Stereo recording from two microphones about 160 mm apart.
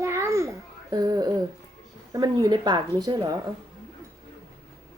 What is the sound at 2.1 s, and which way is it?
A woman's voice, 25° right (ahead or behind).